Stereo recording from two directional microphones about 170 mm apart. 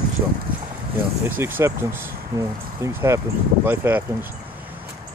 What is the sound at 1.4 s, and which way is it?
Speech, 15° right (ahead or behind).